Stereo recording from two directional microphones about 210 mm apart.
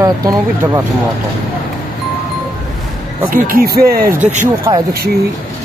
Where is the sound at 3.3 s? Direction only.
40° right (ahead or behind).